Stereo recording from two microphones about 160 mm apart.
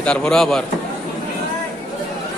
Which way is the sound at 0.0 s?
5° left (ahead or behind).